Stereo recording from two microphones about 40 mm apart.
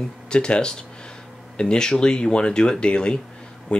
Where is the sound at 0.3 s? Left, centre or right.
Left.